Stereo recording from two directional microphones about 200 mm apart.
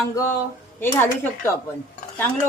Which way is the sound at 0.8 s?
10° left (ahead or behind).